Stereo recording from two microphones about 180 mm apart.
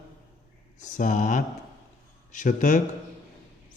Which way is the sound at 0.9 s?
45° left (ahead or behind).